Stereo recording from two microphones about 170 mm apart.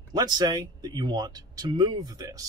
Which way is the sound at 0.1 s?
25° right (ahead or behind).